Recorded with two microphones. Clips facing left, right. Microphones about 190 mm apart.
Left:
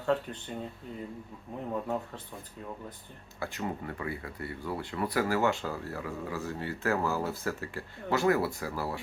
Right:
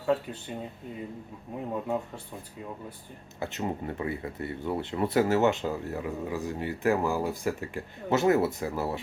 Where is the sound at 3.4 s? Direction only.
25° right (ahead or behind).